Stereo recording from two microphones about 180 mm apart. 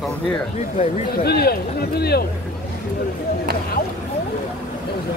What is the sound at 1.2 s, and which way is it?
Speech, 60° left (ahead or behind).